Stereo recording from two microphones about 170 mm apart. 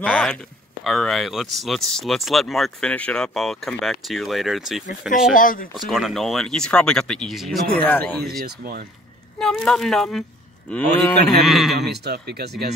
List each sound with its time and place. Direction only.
0.0 s speech: 5° left (ahead or behind)
5.3 s speech: 55° left (ahead or behind)
5.8 s speech: centre (ahead or behind)
8.5 s speech: 70° right (ahead or behind)
9.4 s speech: centre (ahead or behind)
11.9 s speech: 75° right (ahead or behind)